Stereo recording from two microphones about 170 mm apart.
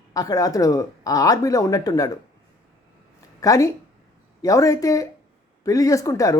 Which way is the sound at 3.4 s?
20° left (ahead or behind).